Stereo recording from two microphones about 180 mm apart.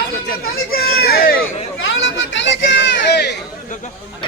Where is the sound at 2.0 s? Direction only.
90° left; by 3.4 s 65° left (ahead or behind).